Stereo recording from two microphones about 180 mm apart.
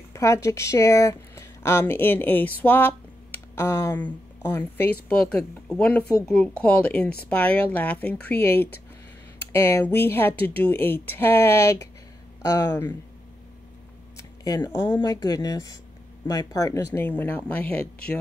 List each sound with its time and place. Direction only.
0.1 s speech: 15° left (ahead or behind)
14.1 s speech: 20° left (ahead or behind)